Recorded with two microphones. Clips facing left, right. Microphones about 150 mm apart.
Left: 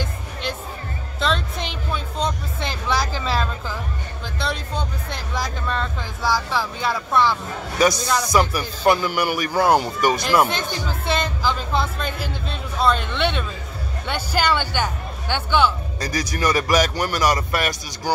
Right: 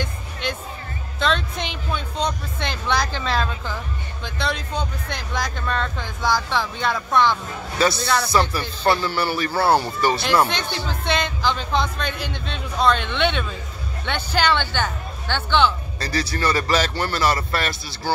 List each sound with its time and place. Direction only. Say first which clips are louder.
0.0 s music: even; centre (ahead or behind)
4.4 s speech: right 1 dB; centre (ahead or behind)
7.8 s speech: left 1 dB; 15° left (ahead or behind)
10.9 s speech: even; 5° left (ahead or behind)